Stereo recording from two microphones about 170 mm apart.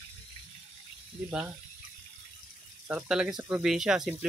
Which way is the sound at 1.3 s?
5° right (ahead or behind).